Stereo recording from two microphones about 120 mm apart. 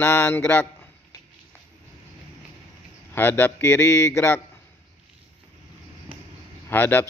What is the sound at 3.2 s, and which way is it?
A man's voice, 15° left (ahead or behind).